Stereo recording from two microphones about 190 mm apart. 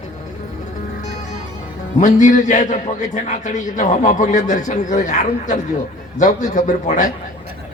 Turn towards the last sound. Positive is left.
turn(degrees=40)  # may be behind; listen again after turning